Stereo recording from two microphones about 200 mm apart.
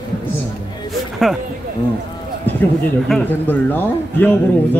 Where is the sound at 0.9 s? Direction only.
Centre (ahead or behind).